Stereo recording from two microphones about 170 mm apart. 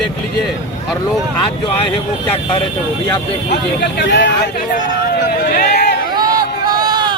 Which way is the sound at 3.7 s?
85° left.